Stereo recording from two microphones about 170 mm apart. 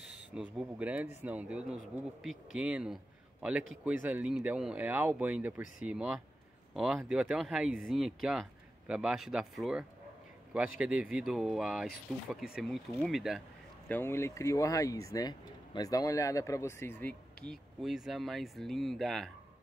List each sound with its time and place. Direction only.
0.2 s speech: 5° right (ahead or behind)
13.8 s speech: 10° left (ahead or behind)
17.0 s speech: 5° left (ahead or behind)